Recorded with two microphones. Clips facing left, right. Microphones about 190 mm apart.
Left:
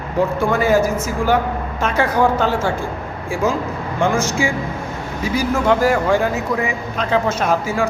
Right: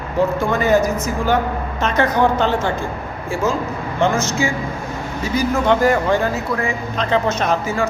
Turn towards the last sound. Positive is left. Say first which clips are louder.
# left 1 dB
turn(degrees=10)  # may be behind; listen again after turning